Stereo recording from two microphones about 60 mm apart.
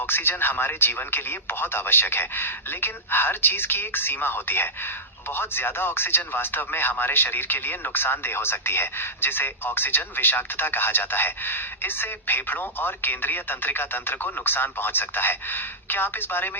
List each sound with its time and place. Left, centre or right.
0.0 s speech: left